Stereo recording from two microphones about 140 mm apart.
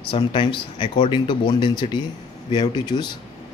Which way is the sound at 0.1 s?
35° left (ahead or behind).